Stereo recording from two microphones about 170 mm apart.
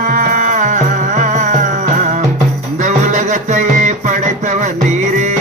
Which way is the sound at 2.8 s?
45° right (ahead or behind).